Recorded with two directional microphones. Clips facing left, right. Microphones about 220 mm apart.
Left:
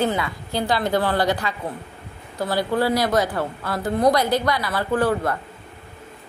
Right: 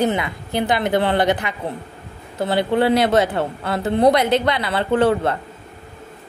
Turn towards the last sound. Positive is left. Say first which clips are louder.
# right 4 dB
turn(degrees=-25)  # may be behind; listen again after turning